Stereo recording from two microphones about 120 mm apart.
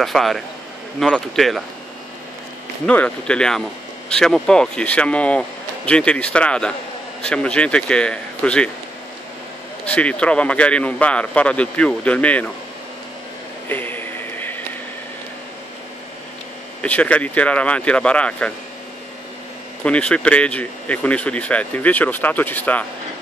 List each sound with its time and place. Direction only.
0.0 s speech: centre (ahead or behind)
2.9 s speech: 10° left (ahead or behind)
9.8 s speech: 10° left (ahead or behind)
13.7 s a sound: 15° left (ahead or behind)
16.8 s speech: 10° left (ahead or behind)
19.8 s speech: 10° left (ahead or behind)